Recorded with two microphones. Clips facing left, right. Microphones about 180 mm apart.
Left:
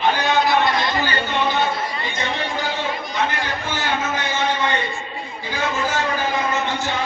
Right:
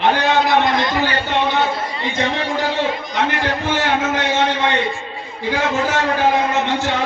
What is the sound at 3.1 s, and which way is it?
A man's voice, 75° right (ahead or behind).